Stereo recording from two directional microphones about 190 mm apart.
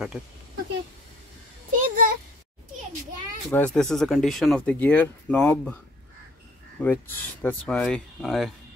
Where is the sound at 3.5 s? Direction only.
5° left (ahead or behind).